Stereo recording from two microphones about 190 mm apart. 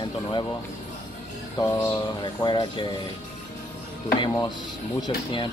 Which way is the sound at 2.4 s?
25° left (ahead or behind).